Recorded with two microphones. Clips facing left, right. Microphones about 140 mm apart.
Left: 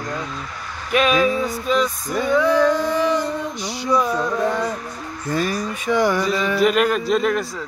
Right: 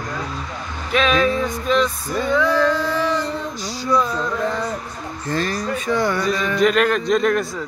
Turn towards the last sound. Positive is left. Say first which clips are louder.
# right 1 dB
turn(degrees=0)  # may be behind; listen again after turning